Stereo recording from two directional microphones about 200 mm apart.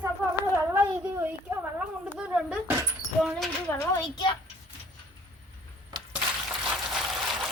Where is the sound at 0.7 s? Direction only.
10° right (ahead or behind).